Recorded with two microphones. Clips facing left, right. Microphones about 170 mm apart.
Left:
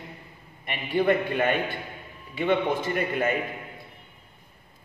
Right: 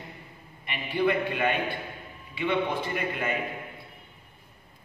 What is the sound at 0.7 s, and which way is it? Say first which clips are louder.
A man's voice: left 3 dB; 45° left (ahead or behind).